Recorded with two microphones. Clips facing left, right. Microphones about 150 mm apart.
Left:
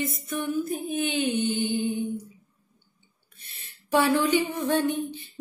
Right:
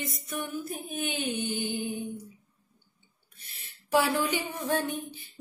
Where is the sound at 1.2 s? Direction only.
20° left (ahead or behind).